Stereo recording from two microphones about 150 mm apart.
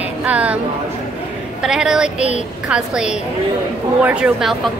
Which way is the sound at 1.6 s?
5° right (ahead or behind).